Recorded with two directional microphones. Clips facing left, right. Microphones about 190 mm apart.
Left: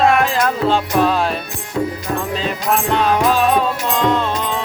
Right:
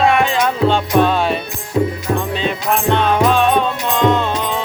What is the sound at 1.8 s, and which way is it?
Music, 20° right (ahead or behind).